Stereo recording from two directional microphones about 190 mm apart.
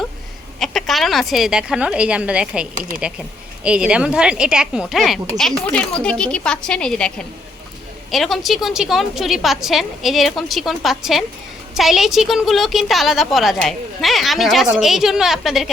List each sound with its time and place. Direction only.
0.6 s a woman's voice: centre (ahead or behind)